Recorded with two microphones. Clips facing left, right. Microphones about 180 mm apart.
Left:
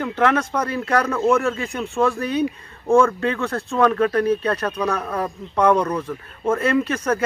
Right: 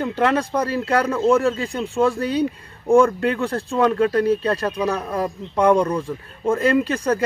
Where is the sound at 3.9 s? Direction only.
30° right (ahead or behind).